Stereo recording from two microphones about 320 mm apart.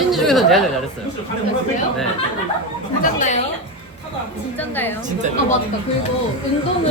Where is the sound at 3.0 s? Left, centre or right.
Left.